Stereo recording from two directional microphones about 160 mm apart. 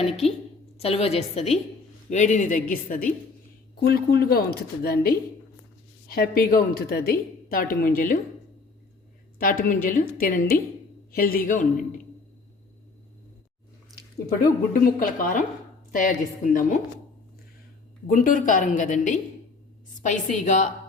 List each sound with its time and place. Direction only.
0.0 s a woman's voice: 40° left (ahead or behind); by 3.1 s 55° left (ahead or behind)
3.8 s a woman's voice: 80° left; by 8.2 s 60° left (ahead or behind)
9.4 s a woman's voice: 60° left (ahead or behind)
14.7 s a woman's voice: 60° left (ahead or behind)
18.1 s a woman's voice: 60° left (ahead or behind)